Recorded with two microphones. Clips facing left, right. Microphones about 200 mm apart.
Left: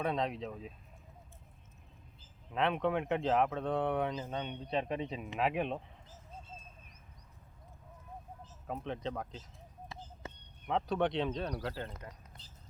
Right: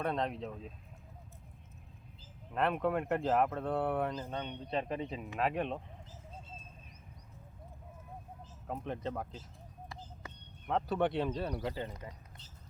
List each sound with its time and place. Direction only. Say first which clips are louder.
0.0 s speech: even; centre (ahead or behind)
2.5 s speech: even; centre (ahead or behind)
4.1 s speech: left 1 dB; 10° left (ahead or behind)
8.6 s speech: even; 5° right (ahead or behind)
10.7 s speech: even; 5° right (ahead or behind)